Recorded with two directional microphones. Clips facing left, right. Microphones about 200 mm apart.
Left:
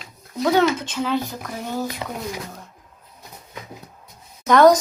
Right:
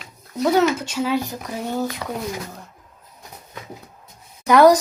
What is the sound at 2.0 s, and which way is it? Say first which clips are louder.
Speech: right 2 dB; 20° left (ahead or behind).